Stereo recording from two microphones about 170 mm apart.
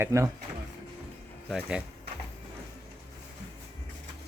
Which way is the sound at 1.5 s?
5° right (ahead or behind).